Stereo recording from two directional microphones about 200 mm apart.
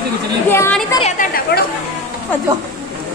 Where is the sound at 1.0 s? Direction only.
40° left (ahead or behind).